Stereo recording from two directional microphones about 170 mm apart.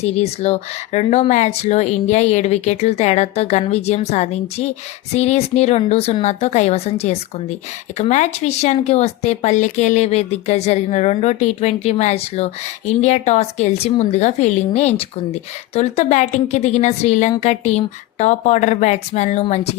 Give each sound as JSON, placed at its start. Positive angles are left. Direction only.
{"t": 0.0, "sound": "a woman's voice", "side_deg": 40}